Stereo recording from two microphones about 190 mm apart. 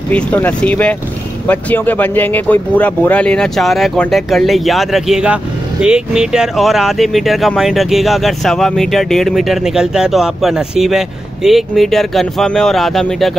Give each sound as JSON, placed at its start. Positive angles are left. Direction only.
{"t": 0.1, "sound": "speech", "side_deg": 10}